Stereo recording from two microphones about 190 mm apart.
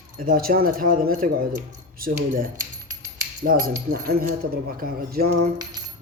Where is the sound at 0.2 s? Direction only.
50° right (ahead or behind).